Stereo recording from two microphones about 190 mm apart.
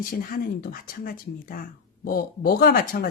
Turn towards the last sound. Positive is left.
turn(degrees=50)  # may be behind; listen again after turning